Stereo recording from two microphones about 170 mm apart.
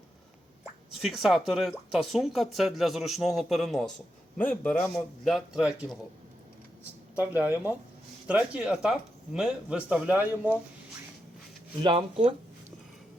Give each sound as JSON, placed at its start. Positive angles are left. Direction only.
{"t": 0.9, "sound": "a man's voice", "side_deg": 0}
{"t": 7.3, "sound": "speech", "side_deg": -10}
{"t": 11.8, "sound": "speech", "side_deg": -30}